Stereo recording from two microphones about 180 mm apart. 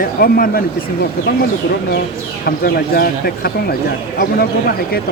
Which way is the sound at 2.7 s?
60° left (ahead or behind).